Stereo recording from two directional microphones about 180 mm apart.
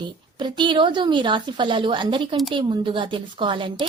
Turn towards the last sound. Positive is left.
turn(degrees=-30)  # may be behind; listen again after turning